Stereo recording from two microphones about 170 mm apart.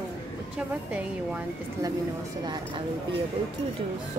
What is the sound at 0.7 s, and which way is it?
Speech, 10° right (ahead or behind).